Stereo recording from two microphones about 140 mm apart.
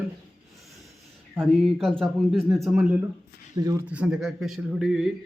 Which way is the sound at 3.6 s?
25° right (ahead or behind).